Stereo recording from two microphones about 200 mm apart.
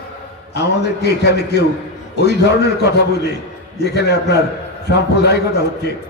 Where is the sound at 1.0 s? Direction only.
55° left (ahead or behind).